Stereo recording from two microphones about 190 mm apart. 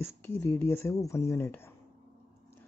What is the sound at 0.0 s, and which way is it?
Speech, 15° left (ahead or behind).